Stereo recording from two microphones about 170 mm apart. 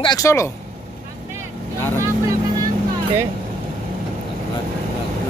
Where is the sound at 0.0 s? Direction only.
20° left (ahead or behind).